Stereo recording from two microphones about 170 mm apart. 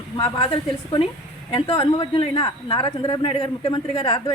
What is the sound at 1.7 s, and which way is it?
Speech, 20° left (ahead or behind).